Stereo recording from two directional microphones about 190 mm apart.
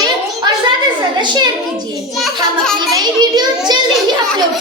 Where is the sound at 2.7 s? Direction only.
20° right (ahead or behind).